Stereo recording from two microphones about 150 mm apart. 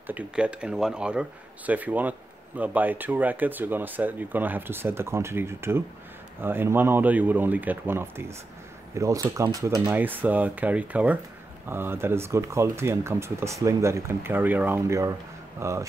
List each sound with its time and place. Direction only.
0.0 s speech: 10° right (ahead or behind)